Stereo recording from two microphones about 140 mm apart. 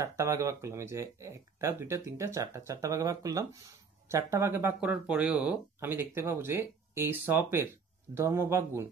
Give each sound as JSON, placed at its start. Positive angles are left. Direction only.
{"t": 0.0, "sound": "speech", "side_deg": -20}